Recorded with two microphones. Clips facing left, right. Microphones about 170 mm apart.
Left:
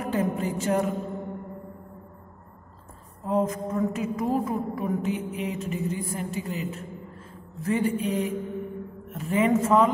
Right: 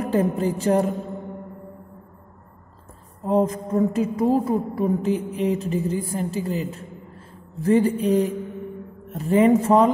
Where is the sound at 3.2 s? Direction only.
35° right (ahead or behind).